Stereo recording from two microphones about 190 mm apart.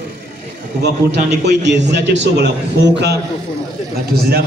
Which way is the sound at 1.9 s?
60° right (ahead or behind).